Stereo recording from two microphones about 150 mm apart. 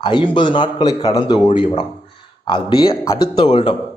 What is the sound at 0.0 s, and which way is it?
Speech, 30° left (ahead or behind).